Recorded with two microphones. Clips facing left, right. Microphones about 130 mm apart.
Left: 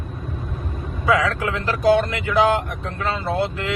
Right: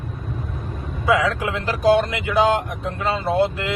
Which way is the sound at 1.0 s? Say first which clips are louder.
Even; 10° right (ahead or behind).